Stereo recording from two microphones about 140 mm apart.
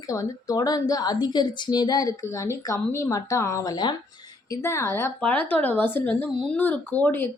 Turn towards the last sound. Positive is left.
turn(degrees=15)  # may be behind; listen again after turning